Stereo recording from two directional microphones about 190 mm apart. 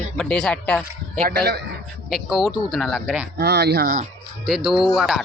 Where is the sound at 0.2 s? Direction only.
5° left (ahead or behind).